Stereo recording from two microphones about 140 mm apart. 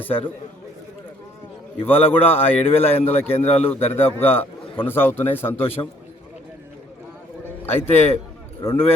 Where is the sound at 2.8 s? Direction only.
45° left (ahead or behind).